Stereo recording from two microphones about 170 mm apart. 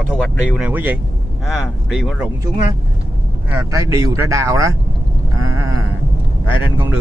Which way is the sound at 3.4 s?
10° right (ahead or behind).